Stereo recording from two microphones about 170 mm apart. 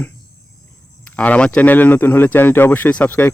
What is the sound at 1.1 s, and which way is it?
Speech, 10° left (ahead or behind).